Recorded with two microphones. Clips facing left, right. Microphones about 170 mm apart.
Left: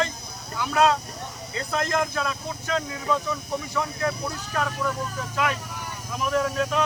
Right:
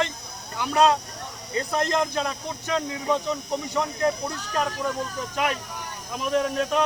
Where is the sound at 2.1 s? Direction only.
20° right (ahead or behind).